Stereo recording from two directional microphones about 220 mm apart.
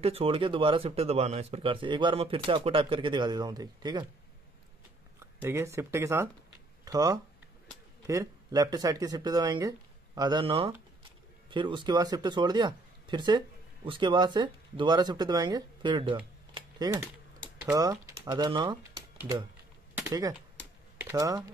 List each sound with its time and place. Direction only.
0.0 s speech: 25° right (ahead or behind)
5.4 s speech: 10° right (ahead or behind)
16.5 s typing: 20° right (ahead or behind)
17.7 s speech: 15° right (ahead or behind)
19.1 s typing: 15° right (ahead or behind)
20.0 s speech: 15° right (ahead or behind)